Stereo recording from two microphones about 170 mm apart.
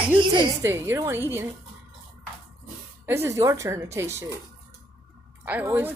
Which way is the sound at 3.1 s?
15° right (ahead or behind).